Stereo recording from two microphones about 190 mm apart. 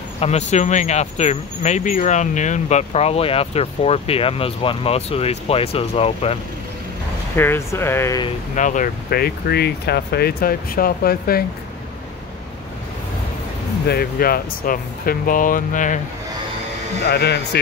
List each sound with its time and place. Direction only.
0.2 s speech: 35° left (ahead or behind)
7.3 s speech: 15° left (ahead or behind)
8.5 s speech: 40° left (ahead or behind)
13.8 s speech: 50° left (ahead or behind)
17.0 s speech: 60° left (ahead or behind)